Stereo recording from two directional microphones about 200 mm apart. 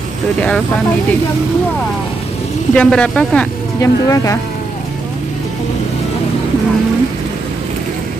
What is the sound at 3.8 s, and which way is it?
Speech, 15° left (ahead or behind).